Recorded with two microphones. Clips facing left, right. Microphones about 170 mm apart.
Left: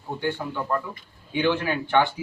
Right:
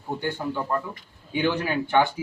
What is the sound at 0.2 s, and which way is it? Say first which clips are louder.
A man's voice: left 3 dB; 10° right (ahead or behind).